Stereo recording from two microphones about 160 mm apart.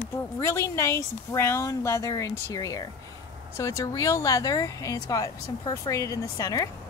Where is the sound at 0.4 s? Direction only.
15° left (ahead or behind).